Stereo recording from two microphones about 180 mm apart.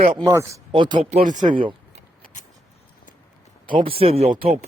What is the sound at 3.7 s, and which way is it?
Speech, 30° right (ahead or behind).